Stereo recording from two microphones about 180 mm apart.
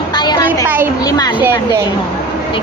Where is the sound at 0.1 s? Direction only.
25° left (ahead or behind).